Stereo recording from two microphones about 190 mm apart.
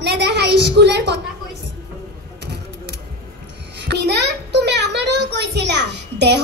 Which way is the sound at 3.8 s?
65° right (ahead or behind).